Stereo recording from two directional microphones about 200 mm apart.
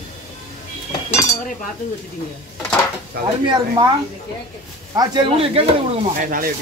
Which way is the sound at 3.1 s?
50° right (ahead or behind).